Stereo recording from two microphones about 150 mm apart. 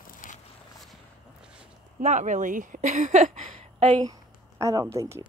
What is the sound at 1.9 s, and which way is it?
Speech, 55° right (ahead or behind).